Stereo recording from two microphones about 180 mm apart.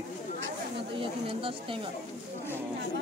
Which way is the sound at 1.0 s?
30° right (ahead or behind).